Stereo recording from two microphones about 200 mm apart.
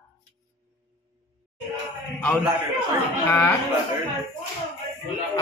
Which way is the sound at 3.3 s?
15° left (ahead or behind).